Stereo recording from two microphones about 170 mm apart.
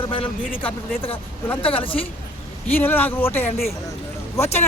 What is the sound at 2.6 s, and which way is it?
Speech, 10° left (ahead or behind).